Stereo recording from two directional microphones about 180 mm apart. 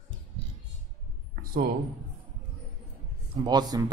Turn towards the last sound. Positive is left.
turn(degrees=-20)  # may be behind; listen again after turning